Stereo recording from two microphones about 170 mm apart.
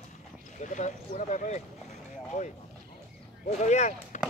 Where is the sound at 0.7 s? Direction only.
45° left (ahead or behind).